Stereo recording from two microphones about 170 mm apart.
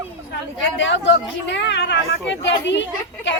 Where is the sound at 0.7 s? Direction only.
90° left.